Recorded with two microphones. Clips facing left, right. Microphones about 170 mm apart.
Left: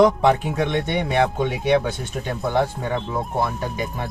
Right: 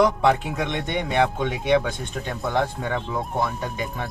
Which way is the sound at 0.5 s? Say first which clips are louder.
Left 4 dB; centre (ahead or behind).